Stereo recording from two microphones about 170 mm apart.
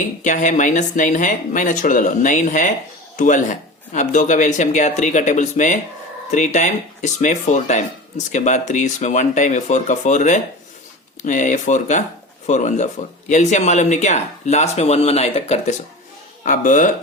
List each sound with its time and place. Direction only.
0.2 s speech: 45° left (ahead or behind)
16.4 s speech: 50° left (ahead or behind)